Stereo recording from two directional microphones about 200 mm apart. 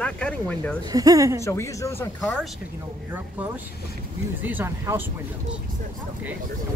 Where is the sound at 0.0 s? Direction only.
5° left (ahead or behind).